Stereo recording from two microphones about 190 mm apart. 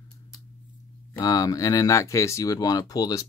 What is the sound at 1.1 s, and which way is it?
Speech, 15° left (ahead or behind).